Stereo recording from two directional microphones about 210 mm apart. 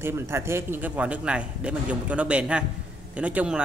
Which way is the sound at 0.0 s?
10° right (ahead or behind).